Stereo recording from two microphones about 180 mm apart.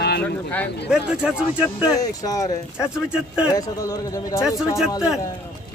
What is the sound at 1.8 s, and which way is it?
Speech, 20° left (ahead or behind).